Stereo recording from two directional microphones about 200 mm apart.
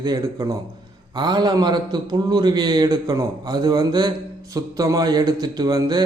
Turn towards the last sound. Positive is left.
turn(degrees=-20)  # may be behind; listen again after turning